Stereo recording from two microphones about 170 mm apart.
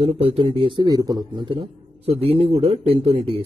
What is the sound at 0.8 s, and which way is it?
A man's voice, 20° right (ahead or behind).